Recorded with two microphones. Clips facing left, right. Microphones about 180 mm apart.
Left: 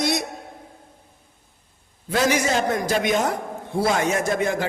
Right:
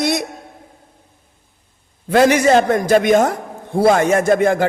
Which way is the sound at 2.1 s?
60° right (ahead or behind).